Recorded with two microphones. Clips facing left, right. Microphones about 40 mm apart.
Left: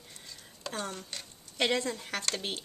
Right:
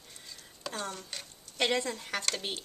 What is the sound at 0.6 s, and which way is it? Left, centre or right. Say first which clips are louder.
Speech: left 1 dB; centre.